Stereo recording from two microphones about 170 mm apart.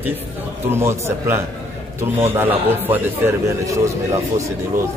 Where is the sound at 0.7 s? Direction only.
15° right (ahead or behind).